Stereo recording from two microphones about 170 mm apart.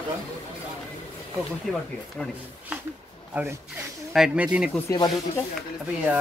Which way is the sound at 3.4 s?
10° right (ahead or behind).